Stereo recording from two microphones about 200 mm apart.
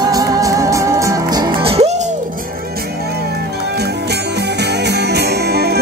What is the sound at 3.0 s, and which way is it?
Music, 55° right (ahead or behind).